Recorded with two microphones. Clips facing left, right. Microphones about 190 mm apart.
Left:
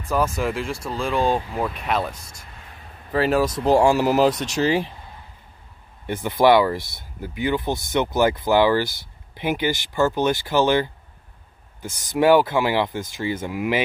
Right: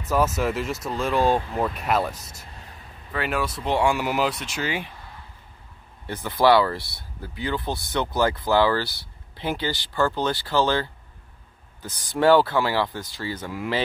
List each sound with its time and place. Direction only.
0.0 s speech: 5° right (ahead or behind)
3.1 s speech: 35° left (ahead or behind)
6.0 s speech: 20° left (ahead or behind)